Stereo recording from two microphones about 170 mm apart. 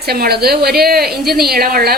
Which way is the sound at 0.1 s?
65° right (ahead or behind).